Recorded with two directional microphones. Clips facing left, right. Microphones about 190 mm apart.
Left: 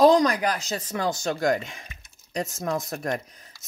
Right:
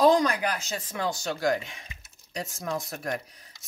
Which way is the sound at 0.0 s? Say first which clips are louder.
Left 3 dB; 35° left (ahead or behind).